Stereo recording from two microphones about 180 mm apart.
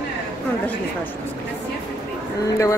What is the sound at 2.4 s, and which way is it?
Speech, 15° left (ahead or behind).